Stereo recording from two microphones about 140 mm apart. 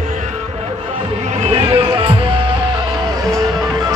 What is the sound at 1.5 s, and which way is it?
Music, 40° right (ahead or behind).